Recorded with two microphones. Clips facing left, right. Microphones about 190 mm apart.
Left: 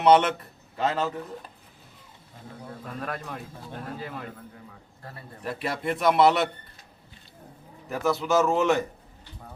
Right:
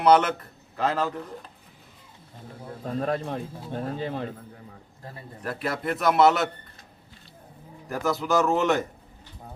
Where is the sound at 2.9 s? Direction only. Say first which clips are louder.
Right 8 dB; 30° right (ahead or behind).